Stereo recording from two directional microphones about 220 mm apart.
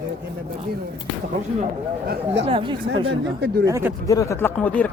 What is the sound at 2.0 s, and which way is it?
Speech, 50° right (ahead or behind).